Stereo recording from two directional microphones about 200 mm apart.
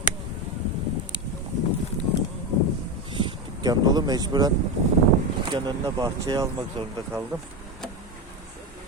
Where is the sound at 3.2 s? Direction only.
20° right (ahead or behind).